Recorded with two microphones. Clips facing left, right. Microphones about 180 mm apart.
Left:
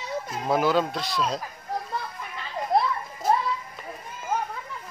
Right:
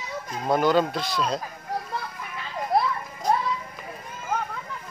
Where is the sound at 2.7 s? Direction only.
Centre (ahead or behind).